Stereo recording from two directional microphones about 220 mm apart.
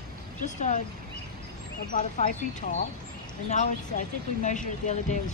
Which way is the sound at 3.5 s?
35° left (ahead or behind).